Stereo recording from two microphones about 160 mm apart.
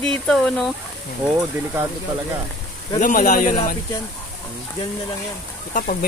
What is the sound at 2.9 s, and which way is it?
Speech, 55° left (ahead or behind).